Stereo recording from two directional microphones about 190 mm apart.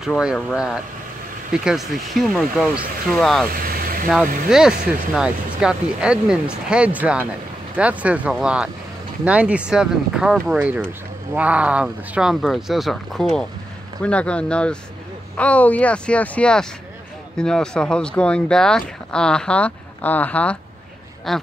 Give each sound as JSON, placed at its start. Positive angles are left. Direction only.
{"t": 0.0, "sound": "speech", "side_deg": -5}
{"t": 3.5, "sound": "vehicle", "side_deg": -50}
{"t": 4.5, "sound": "speech", "side_deg": -5}